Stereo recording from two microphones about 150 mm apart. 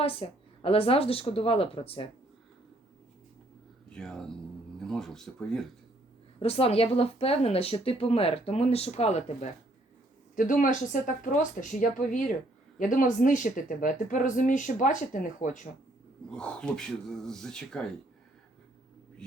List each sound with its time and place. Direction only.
0.0 s speech: 40° left (ahead or behind)
3.9 s speech: 5° left (ahead or behind)
6.4 s speech: 40° left (ahead or behind)
10.3 s speech: 60° left (ahead or behind)
16.3 s speech: 5° left (ahead or behind)